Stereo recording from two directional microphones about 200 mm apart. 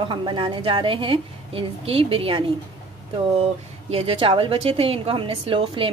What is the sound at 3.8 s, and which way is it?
A woman's voice, 30° right (ahead or behind).